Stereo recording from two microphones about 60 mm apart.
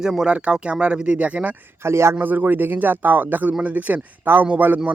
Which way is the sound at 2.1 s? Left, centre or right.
Right.